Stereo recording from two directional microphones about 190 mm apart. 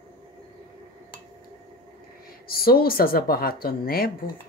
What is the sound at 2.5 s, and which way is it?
Speech, 50° left (ahead or behind).